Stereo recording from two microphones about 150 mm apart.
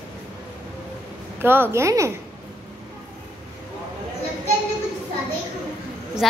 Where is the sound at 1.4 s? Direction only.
15° right (ahead or behind).